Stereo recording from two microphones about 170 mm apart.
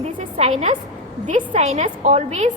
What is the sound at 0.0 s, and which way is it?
Music, 40° right (ahead or behind).